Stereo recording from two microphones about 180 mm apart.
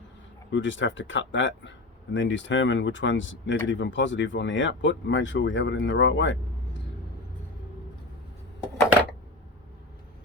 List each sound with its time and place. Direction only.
0.5 s speech: 90° left